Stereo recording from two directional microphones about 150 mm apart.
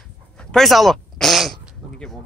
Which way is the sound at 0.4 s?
5° left (ahead or behind).